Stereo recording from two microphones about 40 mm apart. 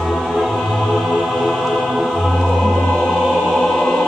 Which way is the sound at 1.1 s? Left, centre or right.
Centre.